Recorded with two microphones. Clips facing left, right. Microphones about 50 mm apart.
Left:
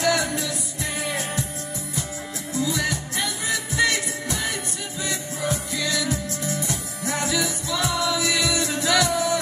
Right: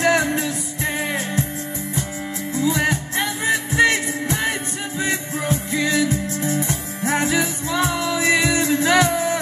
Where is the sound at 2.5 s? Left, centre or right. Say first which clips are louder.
Right 5 dB; right.